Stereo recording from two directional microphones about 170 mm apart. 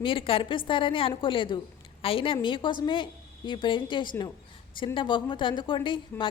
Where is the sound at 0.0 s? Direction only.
30° left (ahead or behind).